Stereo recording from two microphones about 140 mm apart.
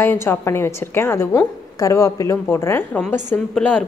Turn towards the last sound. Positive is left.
turn(degrees=10)  # may be behind; listen again after turning